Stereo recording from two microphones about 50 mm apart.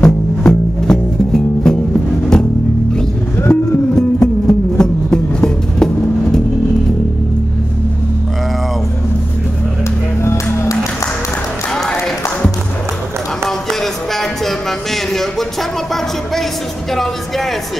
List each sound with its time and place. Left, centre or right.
0.0 s music: centre
3.4 s music: left
3.9 s music: centre
10.2 s music: left
11.7 s a sound: centre
13.5 s music: centre